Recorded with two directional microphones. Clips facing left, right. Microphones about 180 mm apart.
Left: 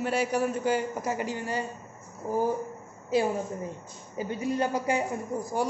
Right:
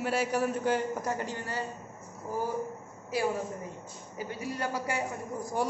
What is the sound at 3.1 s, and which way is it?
A woman's voice, 25° left (ahead or behind).